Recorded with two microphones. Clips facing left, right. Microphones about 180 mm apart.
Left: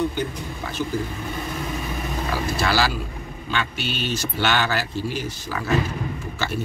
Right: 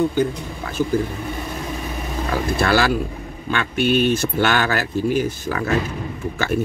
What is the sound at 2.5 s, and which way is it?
Speech, 55° right (ahead or behind).